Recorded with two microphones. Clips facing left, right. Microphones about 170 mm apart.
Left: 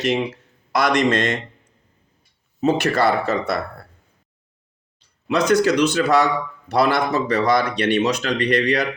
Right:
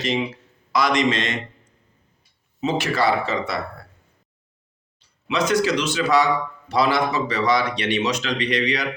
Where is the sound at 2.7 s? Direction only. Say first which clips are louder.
Left 3 dB; 60° left (ahead or behind).